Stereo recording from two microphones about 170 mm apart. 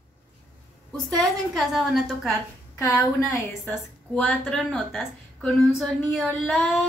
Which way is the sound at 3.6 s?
Centre (ahead or behind).